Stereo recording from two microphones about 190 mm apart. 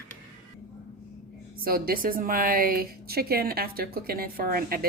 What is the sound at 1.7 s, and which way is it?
A woman's voice, 50° right (ahead or behind).